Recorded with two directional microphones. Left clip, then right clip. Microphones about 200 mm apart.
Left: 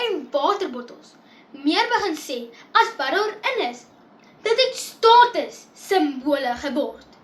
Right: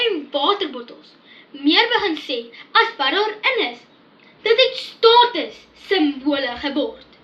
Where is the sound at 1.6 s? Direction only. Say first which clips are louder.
Right 4 dB; 20° left (ahead or behind).